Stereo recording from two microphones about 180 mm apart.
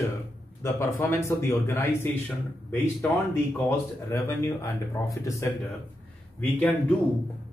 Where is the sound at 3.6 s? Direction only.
15° left (ahead or behind).